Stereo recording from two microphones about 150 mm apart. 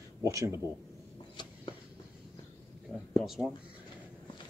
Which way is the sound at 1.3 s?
30° left (ahead or behind).